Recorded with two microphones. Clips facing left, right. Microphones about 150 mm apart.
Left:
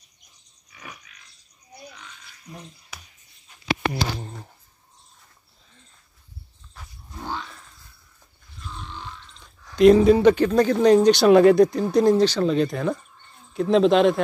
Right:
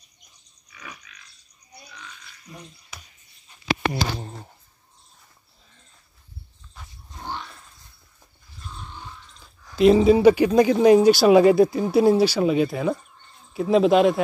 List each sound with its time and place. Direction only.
0.7 s pig: 45° left (ahead or behind)
9.4 s speech: 5° right (ahead or behind)